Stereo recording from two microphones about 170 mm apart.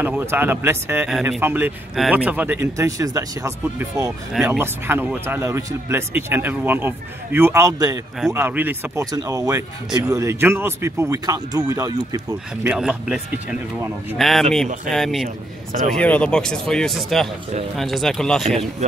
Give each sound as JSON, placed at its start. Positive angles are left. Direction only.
{"t": 0.0, "sound": "speech", "side_deg": -10}
{"t": 9.0, "sound": "speech", "side_deg": -20}
{"t": 12.6, "sound": "speech", "side_deg": -5}
{"t": 15.2, "sound": "a man's voice", "side_deg": -45}
{"t": 15.9, "sound": "speech", "side_deg": 5}